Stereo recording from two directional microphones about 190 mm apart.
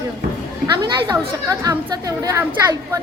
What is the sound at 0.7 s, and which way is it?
A woman's voice, 20° right (ahead or behind).